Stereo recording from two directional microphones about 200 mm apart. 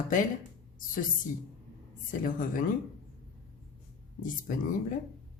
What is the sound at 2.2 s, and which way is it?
Speech, 40° left (ahead or behind).